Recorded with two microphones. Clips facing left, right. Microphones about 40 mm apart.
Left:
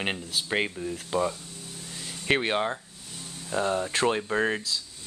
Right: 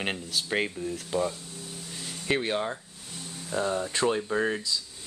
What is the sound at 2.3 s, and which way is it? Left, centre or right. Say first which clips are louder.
Speech: left 3 dB; left.